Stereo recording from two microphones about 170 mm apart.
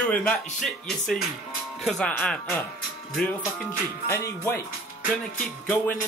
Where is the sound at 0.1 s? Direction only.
5° left (ahead or behind).